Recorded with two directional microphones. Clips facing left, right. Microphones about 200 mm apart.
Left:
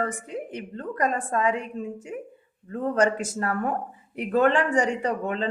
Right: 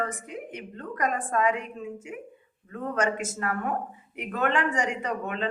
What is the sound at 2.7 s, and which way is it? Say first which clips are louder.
A man's voice: left 5 dB; 35° left (ahead or behind).